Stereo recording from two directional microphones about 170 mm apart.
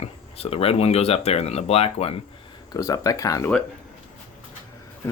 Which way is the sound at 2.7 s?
20° left (ahead or behind).